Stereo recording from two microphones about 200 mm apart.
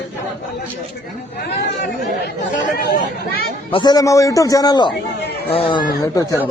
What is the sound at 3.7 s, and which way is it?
A man's voice, 20° left (ahead or behind).